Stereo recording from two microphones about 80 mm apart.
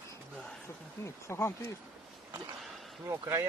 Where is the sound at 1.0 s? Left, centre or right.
Left.